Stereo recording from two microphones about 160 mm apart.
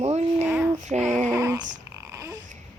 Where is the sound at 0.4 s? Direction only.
10° right (ahead or behind).